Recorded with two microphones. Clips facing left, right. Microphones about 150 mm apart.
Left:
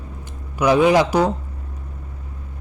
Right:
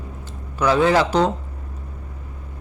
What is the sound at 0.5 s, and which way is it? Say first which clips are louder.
Speech: left 2 dB; 15° left (ahead or behind).